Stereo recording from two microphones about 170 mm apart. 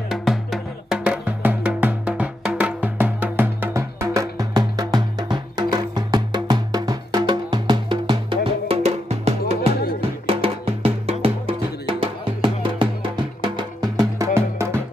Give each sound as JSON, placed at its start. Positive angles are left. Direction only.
{"t": 0.1, "sound": "music", "side_deg": 0}